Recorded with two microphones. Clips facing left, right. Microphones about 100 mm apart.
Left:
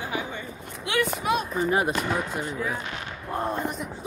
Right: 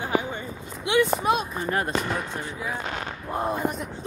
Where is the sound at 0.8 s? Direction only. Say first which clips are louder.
Right 4 dB; 20° right (ahead or behind).